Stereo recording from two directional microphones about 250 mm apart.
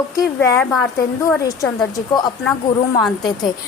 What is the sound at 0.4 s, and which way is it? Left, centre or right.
A woman's voice, centre.